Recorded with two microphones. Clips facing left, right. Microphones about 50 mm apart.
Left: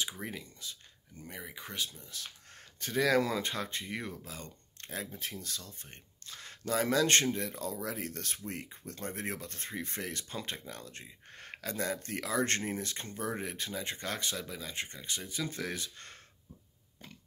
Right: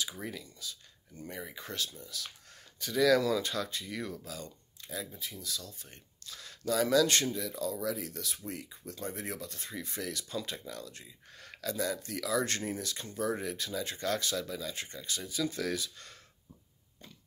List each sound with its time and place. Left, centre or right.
0.2 s speech: left
1.3 s speech: centre
1.6 s speech: left
5.1 s speech: left
5.5 s speech: left